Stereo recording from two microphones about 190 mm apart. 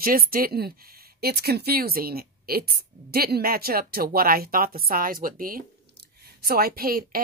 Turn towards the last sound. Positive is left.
turn(degrees=-50)  # may be behind; listen again after turning